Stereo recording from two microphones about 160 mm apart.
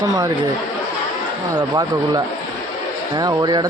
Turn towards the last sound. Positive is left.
turn(degrees=-25)  # may be behind; listen again after turning